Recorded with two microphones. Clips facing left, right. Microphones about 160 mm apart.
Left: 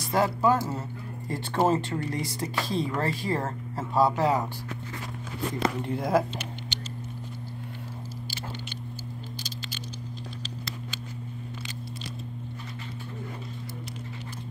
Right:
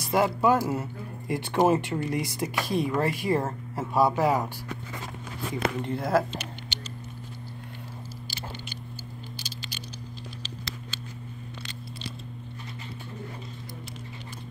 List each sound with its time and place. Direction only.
0.1 s speech: 5° right (ahead or behind)
5.9 s speech: centre (ahead or behind)